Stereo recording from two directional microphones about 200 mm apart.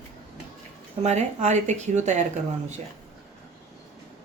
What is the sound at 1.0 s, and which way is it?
Speech, 35° right (ahead or behind).